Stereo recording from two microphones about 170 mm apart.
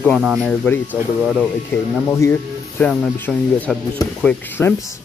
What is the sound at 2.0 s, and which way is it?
Speech, 15° left (ahead or behind).